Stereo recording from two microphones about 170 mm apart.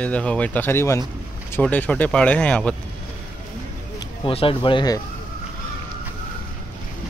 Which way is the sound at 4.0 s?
30° left (ahead or behind).